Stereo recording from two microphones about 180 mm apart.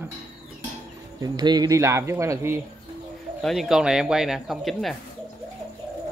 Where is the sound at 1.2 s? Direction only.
25° right (ahead or behind).